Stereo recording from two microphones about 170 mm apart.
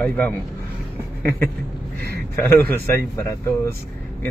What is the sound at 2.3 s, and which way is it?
A man's voice, 15° left (ahead or behind).